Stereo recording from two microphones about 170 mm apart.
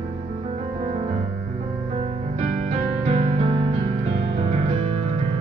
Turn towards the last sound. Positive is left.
turn(degrees=-35)  # may be behind; listen again after turning